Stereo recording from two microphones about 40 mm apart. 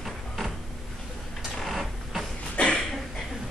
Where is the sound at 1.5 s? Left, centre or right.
Centre.